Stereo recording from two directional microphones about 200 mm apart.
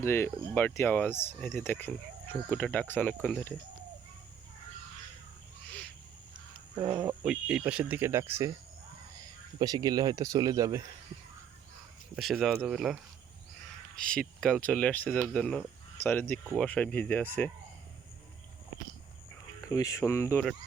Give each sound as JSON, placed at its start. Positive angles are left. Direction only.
{"t": 0.0, "sound": "speech", "side_deg": 15}
{"t": 6.8, "sound": "speech", "side_deg": -20}
{"t": 7.2, "sound": "speech", "side_deg": -5}
{"t": 9.6, "sound": "speech", "side_deg": -20}
{"t": 12.1, "sound": "speech", "side_deg": 0}
{"t": 19.6, "sound": "speech", "side_deg": 15}